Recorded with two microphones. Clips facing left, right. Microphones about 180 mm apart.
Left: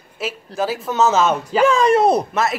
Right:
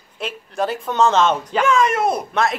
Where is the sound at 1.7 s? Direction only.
30° left (ahead or behind).